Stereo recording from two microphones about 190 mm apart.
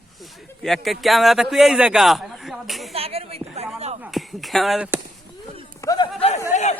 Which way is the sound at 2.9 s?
30° right (ahead or behind).